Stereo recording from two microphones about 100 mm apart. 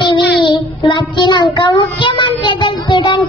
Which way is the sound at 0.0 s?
50° left (ahead or behind).